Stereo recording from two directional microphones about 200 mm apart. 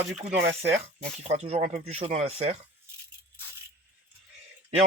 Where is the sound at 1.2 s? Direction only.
35° right (ahead or behind).